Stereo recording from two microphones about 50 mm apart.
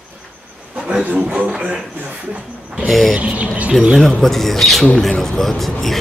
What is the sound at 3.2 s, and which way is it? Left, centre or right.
Speech, right.